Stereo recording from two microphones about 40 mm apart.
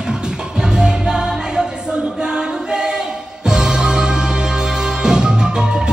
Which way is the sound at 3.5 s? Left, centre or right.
Centre.